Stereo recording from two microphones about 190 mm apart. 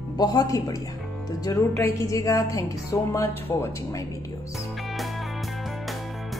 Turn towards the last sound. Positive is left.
turn(degrees=0)  # may be behind; listen again after turning